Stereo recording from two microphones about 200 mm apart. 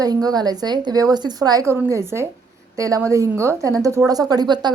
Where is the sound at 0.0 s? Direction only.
20° right (ahead or behind).